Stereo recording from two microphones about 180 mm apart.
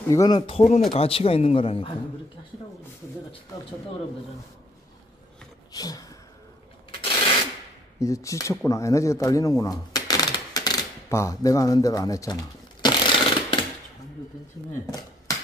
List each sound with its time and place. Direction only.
0.1 s speech: 20° left (ahead or behind)
0.4 s a man's voice: 35° left (ahead or behind)
5.7 s a sound: 20° left (ahead or behind)
7.0 s rub: 25° left (ahead or behind)
8.0 s speech: 15° left (ahead or behind)
14.7 s speech: 20° left (ahead or behind)